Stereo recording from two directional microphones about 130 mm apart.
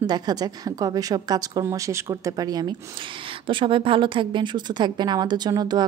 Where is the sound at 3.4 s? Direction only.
40° right (ahead or behind).